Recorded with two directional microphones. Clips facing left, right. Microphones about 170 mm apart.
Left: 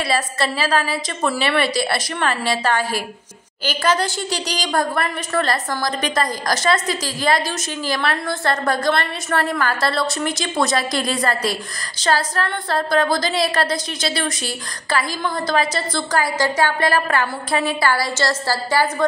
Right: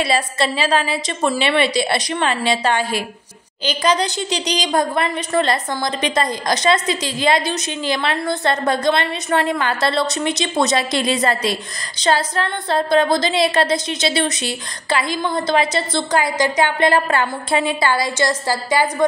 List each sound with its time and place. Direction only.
0.0 s a woman's voice: 25° right (ahead or behind)